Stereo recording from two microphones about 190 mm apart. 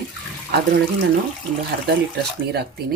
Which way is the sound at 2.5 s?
60° right (ahead or behind).